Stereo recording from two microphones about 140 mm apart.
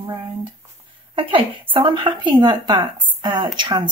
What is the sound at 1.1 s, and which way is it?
A woman's voice, 40° right (ahead or behind).